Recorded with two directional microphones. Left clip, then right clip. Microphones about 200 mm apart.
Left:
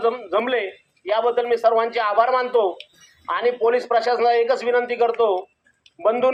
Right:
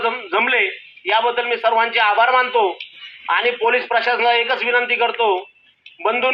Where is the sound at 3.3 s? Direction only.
60° left (ahead or behind).